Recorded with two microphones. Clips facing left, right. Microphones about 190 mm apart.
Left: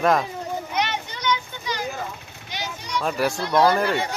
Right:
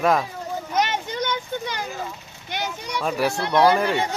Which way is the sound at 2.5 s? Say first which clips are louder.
Right 3 dB; 55° right (ahead or behind).